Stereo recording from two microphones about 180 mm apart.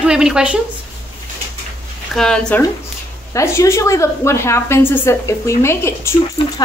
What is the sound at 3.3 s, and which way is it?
A woman's voice, 15° left (ahead or behind).